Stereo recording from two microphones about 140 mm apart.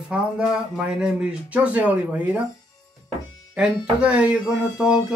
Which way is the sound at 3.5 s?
5° right (ahead or behind).